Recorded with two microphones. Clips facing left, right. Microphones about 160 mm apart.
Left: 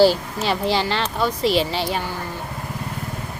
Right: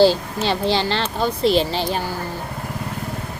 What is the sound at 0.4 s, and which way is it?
Speech, 30° right (ahead or behind).